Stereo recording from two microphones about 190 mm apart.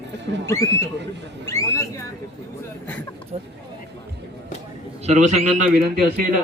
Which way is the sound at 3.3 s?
35° right (ahead or behind).